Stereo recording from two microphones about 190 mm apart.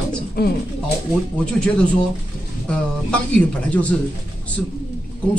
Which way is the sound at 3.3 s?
5° left (ahead or behind).